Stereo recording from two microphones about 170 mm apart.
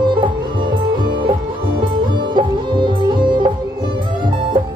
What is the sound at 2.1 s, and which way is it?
Music, 30° right (ahead or behind).